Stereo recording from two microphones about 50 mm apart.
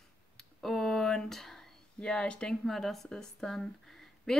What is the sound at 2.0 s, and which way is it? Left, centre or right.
Speech, left.